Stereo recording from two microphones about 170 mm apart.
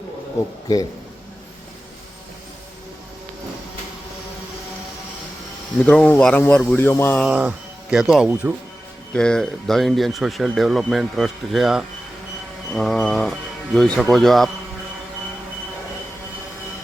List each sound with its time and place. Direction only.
0.4 s speech: 20° left (ahead or behind)
5.8 s speech: 5° left (ahead or behind)
7.3 s speech: 5° right (ahead or behind)
9.1 s speech: 5° left (ahead or behind)